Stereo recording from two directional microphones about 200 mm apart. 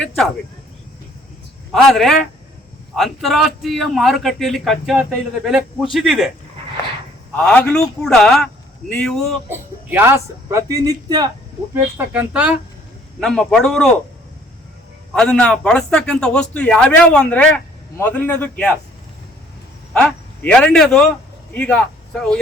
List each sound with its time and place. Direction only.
1.7 s a man's voice: centre (ahead or behind)
7.3 s a man's voice: 5° left (ahead or behind)
9.5 s a man's voice: 10° right (ahead or behind)
15.1 s a man's voice: 5° left (ahead or behind)
19.9 s speech: 5° left (ahead or behind)